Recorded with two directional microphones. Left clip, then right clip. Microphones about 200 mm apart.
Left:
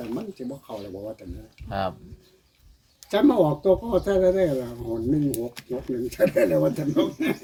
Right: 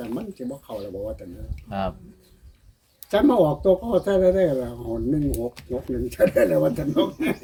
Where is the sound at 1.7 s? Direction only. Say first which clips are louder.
Even; 35° left (ahead or behind).